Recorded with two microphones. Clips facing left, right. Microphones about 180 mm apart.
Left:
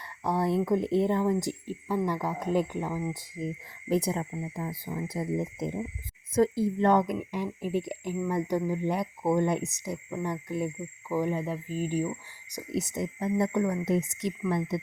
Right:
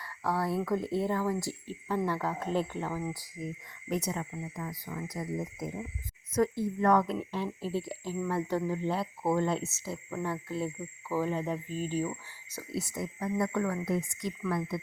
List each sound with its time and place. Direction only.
0.3 s speech: 20° left (ahead or behind)